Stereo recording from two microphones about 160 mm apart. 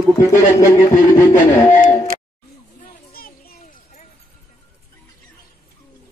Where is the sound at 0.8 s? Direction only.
25° left (ahead or behind).